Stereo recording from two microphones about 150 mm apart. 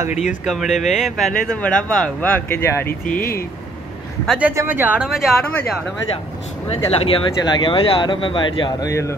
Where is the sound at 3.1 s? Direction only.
70° left (ahead or behind).